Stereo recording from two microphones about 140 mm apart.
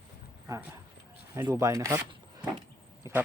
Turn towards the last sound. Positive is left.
turn(degrees=-20)  # may be behind; listen again after turning